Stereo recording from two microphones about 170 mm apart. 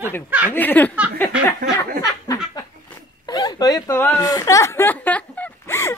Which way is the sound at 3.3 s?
25° left (ahead or behind).